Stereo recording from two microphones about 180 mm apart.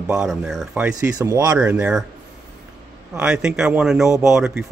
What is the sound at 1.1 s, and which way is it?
Speech, 15° right (ahead or behind).